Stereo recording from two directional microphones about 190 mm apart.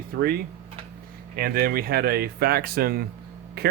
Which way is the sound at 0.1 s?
55° right (ahead or behind).